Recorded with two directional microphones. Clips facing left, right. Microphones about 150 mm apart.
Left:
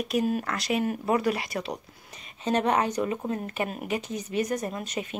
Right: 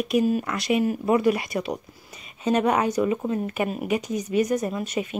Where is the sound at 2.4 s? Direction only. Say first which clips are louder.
Right 3 dB; 10° right (ahead or behind).